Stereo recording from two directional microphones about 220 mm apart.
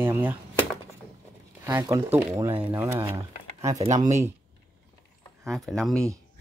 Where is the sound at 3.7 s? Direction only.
30° right (ahead or behind).